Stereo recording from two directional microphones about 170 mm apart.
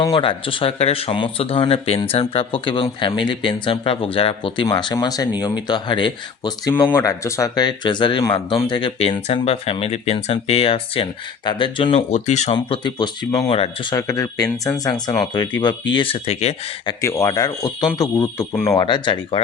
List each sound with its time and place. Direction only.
0.0 s speech: 25° left (ahead or behind)
17.0 s speech: 15° left (ahead or behind)